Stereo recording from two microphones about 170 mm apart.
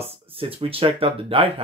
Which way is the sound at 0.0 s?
35° right (ahead or behind).